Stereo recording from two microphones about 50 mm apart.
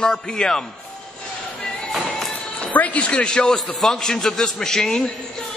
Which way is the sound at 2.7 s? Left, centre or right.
Left.